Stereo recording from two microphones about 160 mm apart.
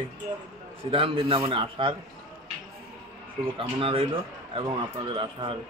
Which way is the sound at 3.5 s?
35° right (ahead or behind).